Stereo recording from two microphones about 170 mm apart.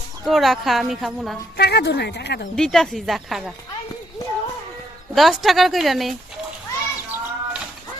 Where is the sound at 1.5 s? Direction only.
75° left (ahead or behind).